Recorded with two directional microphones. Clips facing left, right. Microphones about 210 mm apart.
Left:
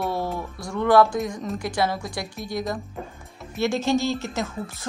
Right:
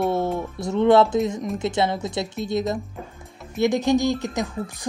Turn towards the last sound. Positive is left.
turn(degrees=-15)  # may be behind; listen again after turning